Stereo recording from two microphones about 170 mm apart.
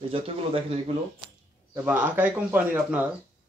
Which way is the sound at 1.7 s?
10° right (ahead or behind).